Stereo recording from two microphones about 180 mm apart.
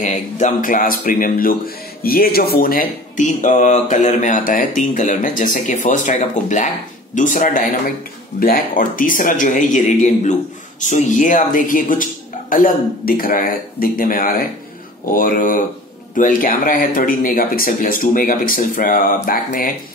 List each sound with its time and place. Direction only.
0.0 s speech: 40° left (ahead or behind)